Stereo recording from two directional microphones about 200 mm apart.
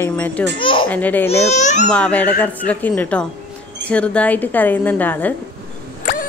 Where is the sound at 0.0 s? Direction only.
10° left (ahead or behind).